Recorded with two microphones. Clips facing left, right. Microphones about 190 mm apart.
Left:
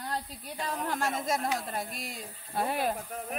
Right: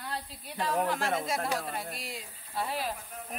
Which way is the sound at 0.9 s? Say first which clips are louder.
Even; 45° left (ahead or behind).